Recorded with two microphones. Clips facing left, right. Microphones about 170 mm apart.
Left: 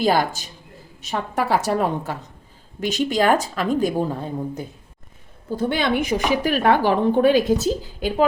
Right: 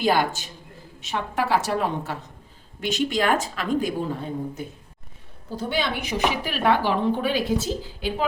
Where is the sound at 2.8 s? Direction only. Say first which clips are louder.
Left 4 dB; 40° left (ahead or behind).